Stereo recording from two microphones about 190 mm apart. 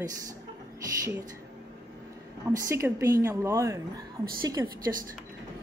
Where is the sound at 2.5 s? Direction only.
15° right (ahead or behind).